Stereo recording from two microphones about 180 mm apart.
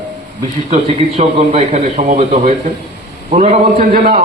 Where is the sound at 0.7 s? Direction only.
35° right (ahead or behind).